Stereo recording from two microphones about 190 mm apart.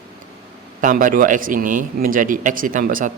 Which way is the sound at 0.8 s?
45° right (ahead or behind).